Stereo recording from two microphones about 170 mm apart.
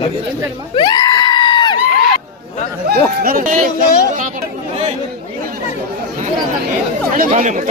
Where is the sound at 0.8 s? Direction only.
25° left (ahead or behind).